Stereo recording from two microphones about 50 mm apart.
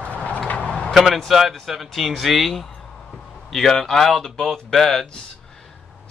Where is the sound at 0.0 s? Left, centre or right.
Left.